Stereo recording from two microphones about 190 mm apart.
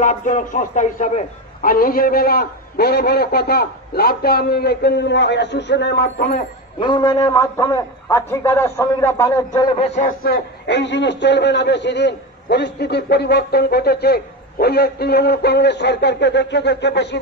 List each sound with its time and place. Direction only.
0.0 s a man's voice: 40° left (ahead or behind)
6.8 s a man's voice: 25° left (ahead or behind)
9.8 s a man's voice: 35° left (ahead or behind); by 17.2 s 65° left (ahead or behind)